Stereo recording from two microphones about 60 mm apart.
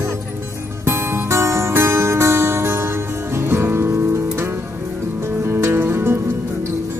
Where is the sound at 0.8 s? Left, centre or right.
Right.